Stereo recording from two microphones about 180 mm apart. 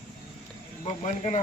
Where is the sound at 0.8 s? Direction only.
40° left (ahead or behind).